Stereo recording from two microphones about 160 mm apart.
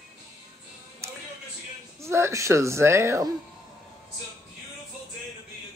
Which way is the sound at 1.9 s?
15° right (ahead or behind).